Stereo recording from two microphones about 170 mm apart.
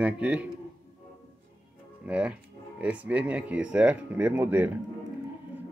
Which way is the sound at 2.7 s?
10° right (ahead or behind).